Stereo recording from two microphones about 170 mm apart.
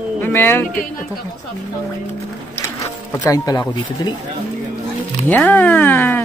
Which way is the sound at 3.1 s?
20° left (ahead or behind).